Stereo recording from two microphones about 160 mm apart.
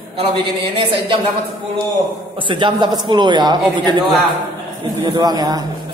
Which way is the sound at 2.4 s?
30° right (ahead or behind).